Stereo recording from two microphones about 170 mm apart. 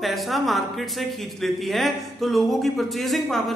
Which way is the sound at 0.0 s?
Centre (ahead or behind).